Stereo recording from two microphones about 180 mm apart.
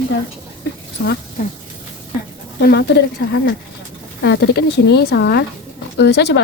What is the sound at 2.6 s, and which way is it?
Speech, 60° left (ahead or behind).